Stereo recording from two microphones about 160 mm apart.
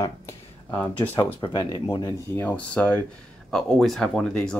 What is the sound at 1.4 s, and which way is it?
Speech, 30° left (ahead or behind).